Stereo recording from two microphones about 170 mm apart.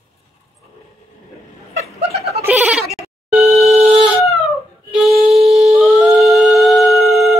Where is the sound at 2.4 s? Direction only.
10° right (ahead or behind).